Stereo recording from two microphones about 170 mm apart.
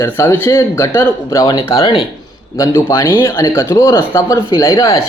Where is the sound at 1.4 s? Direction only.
25° left (ahead or behind).